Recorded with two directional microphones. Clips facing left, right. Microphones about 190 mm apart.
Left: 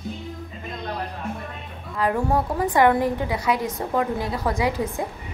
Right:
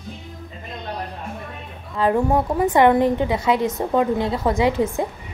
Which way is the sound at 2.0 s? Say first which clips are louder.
Right 4 dB; 25° right (ahead or behind).